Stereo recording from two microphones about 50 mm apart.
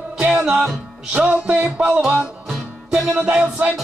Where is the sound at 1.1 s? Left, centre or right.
Right.